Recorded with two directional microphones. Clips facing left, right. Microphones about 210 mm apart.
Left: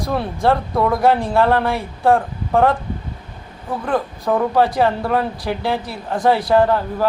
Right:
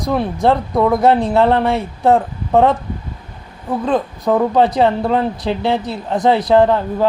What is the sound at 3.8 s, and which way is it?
A woman's voice, 20° right (ahead or behind).